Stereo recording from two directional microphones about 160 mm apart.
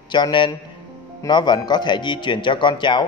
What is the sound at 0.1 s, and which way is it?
A man's voice, 30° left (ahead or behind).